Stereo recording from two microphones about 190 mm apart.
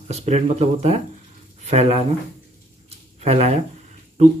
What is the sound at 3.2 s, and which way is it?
Speech, 35° right (ahead or behind).